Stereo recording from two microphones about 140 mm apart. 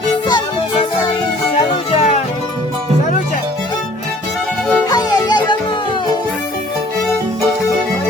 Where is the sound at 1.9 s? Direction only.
50° left (ahead or behind).